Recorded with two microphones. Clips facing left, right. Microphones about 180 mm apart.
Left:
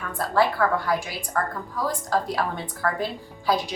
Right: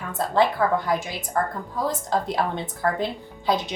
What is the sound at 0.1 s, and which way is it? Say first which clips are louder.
A woman's voice: right 1 dB; 20° right (ahead or behind).